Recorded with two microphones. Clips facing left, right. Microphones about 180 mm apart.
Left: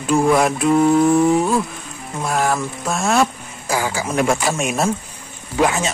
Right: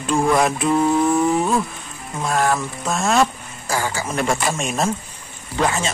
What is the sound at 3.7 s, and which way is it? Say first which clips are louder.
Speech: left 2 dB; 10° left (ahead or behind).